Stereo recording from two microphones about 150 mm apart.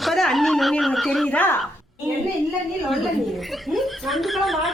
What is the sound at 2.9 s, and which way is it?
Speech, centre (ahead or behind).